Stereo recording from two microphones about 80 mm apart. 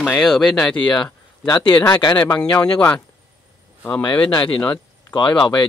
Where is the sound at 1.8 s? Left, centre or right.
Left.